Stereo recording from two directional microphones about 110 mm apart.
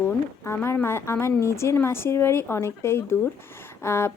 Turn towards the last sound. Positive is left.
turn(degrees=25)  # may be behind; listen again after turning